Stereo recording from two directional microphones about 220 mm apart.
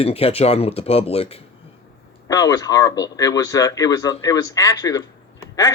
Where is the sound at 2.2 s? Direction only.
15° left (ahead or behind).